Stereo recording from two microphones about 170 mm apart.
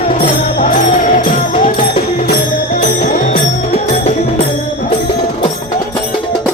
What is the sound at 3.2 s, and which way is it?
Music, 40° left (ahead or behind).